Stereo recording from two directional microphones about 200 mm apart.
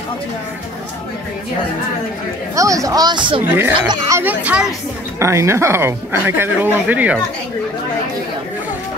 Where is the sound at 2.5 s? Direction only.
15° right (ahead or behind).